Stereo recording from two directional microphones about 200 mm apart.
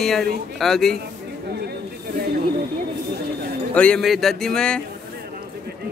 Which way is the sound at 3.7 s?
5° left (ahead or behind).